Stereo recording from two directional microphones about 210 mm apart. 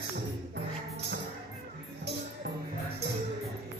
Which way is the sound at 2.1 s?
50° right (ahead or behind).